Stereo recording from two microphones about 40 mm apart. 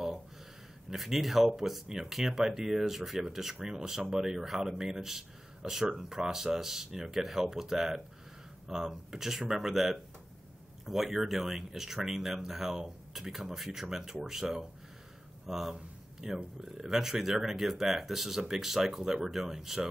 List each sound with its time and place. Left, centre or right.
0.8 s speech: centre
15.4 s a sound: centre
16.7 s speech: centre